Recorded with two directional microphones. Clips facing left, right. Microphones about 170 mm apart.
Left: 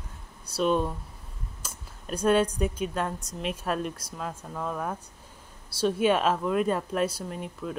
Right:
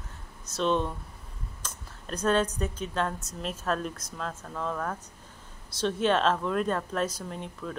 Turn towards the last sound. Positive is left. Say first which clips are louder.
# left 2 dB
turn(degrees=5)  # may be behind; listen again after turning